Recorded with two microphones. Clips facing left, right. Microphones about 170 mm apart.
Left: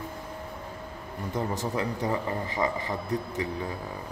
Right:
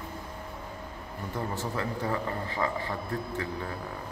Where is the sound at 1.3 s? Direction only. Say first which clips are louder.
Left 4 dB; 20° left (ahead or behind).